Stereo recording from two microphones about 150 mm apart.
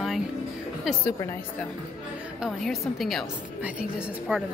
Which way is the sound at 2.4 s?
Centre (ahead or behind).